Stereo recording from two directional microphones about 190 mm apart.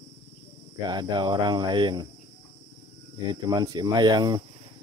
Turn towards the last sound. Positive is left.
turn(degrees=-20)  # may be behind; listen again after turning